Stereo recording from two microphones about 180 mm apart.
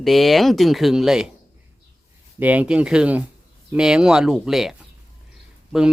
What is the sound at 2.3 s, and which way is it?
Speech, 10° right (ahead or behind).